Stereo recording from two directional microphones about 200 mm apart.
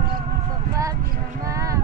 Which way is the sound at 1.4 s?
15° right (ahead or behind).